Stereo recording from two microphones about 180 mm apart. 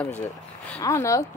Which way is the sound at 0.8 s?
15° left (ahead or behind).